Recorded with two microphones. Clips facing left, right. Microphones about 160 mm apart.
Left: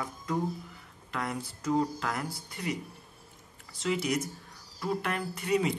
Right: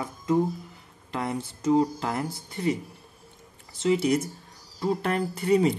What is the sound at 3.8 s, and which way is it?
Speech, 30° right (ahead or behind).